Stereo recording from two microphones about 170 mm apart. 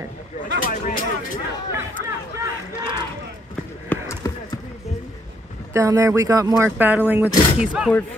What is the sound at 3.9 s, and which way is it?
Basketball bounce, 15° left (ahead or behind).